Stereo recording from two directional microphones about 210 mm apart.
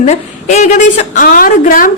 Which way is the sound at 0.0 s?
30° left (ahead or behind).